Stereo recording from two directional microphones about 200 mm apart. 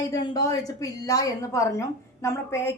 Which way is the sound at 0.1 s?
15° left (ahead or behind).